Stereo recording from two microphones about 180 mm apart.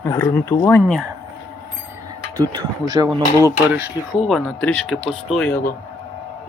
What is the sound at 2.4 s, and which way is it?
Speech, 20° right (ahead or behind).